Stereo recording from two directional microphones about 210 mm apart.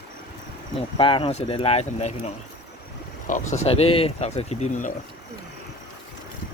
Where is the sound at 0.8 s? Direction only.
25° left (ahead or behind).